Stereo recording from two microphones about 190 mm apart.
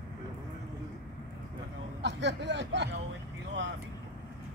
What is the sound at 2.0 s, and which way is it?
Speech, 65° right (ahead or behind).